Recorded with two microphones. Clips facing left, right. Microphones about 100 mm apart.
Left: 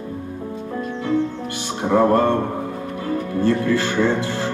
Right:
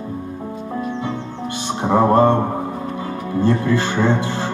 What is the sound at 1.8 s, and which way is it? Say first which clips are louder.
Music: right 2 dB; 20° right (ahead or behind).